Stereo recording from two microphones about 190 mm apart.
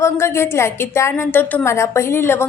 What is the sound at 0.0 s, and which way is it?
A woman's voice, 15° left (ahead or behind).